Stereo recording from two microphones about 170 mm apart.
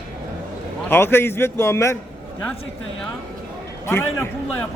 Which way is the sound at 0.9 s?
15° left (ahead or behind).